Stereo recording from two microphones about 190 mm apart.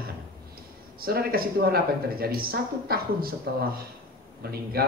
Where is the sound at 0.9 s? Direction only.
50° right (ahead or behind).